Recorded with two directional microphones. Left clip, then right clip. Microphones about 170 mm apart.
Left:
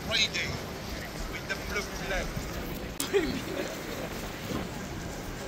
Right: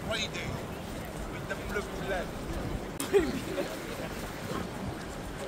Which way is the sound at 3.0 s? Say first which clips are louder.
Right 1 dB; 60° right (ahead or behind).